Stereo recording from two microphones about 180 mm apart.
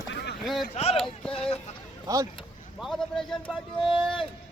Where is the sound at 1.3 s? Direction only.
35° left (ahead or behind).